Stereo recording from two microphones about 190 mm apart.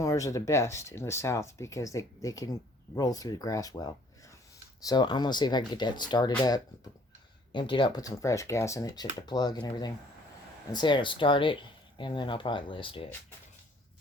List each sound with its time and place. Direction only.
0.0 s speech: 15° left (ahead or behind)
7.5 s speech: 25° left (ahead or behind)